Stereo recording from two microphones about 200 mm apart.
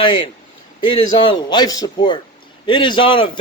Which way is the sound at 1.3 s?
20° left (ahead or behind).